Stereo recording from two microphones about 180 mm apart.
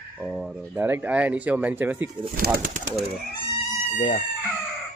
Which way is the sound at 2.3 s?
55° right (ahead or behind).